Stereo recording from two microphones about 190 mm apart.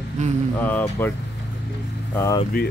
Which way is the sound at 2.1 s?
15° left (ahead or behind).